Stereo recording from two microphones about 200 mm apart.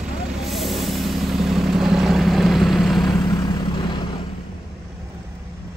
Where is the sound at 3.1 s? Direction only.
20° left (ahead or behind).